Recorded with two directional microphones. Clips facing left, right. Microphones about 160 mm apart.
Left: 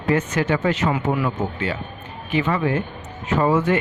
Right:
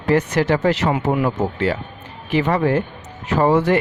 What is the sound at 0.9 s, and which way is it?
Speech, 50° right (ahead or behind).